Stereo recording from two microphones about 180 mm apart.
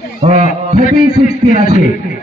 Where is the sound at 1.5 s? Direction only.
40° right (ahead or behind).